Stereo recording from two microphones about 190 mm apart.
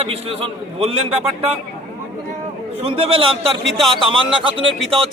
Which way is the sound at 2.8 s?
30° right (ahead or behind).